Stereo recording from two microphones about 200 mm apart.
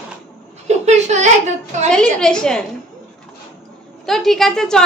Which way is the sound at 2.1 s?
5° left (ahead or behind).